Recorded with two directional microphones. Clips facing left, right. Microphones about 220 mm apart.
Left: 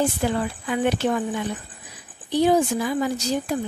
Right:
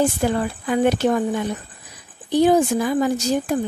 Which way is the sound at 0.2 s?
45° right (ahead or behind).